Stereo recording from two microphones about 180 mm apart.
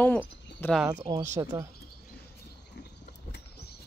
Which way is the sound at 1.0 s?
20° right (ahead or behind).